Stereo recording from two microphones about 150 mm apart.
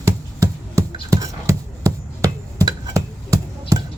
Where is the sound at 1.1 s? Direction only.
20° right (ahead or behind).